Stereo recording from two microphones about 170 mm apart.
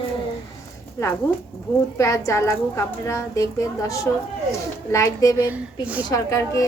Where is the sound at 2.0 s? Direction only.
20° left (ahead or behind).